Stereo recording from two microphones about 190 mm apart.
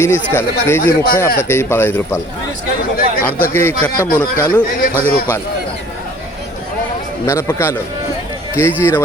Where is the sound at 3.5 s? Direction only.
10° left (ahead or behind).